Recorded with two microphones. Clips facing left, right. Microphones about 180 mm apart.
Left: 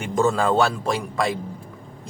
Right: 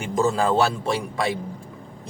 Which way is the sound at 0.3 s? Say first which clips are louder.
Left 1 dB; 30° right (ahead or behind).